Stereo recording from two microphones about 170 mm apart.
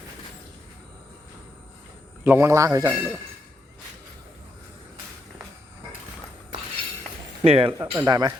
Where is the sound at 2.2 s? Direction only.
15° right (ahead or behind).